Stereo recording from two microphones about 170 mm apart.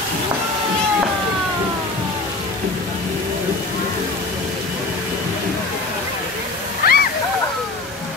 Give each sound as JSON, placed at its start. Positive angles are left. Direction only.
{"t": 6.8, "sound": "splash", "side_deg": 60}